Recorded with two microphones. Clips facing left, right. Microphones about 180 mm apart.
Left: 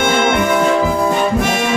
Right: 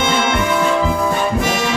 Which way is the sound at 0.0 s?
55° left (ahead or behind).